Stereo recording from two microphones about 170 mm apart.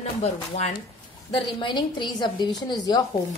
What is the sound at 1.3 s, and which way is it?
A woman's voice, 30° left (ahead or behind).